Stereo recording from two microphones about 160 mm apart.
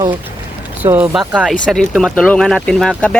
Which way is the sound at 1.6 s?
Centre (ahead or behind).